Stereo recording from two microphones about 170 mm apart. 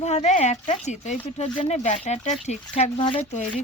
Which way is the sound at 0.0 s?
40° left (ahead or behind).